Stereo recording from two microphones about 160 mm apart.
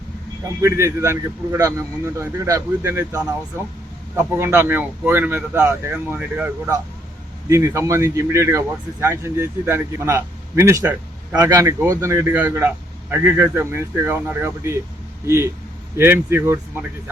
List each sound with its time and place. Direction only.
0.6 s speech: 15° right (ahead or behind)
7.5 s speech: 20° right (ahead or behind)